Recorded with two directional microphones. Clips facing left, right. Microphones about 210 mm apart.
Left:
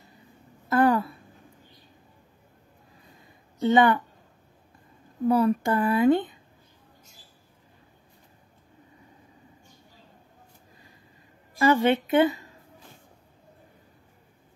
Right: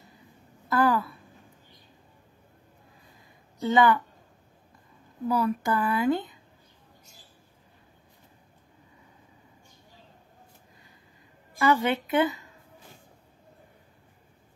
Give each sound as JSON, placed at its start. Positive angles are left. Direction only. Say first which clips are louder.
{"t": 0.7, "sound": "a sound", "louder": "left 3 dB", "side_deg": 25}
{"t": 3.5, "sound": "a woman's voice", "louder": "left 2 dB", "side_deg": 25}
{"t": 5.3, "sound": "speech", "louder": "left 4 dB", "side_deg": 25}
{"t": 11.6, "sound": "speech", "louder": "left 3 dB", "side_deg": 30}